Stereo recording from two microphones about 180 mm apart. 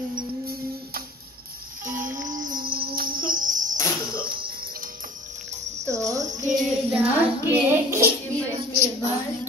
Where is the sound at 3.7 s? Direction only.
15° left (ahead or behind).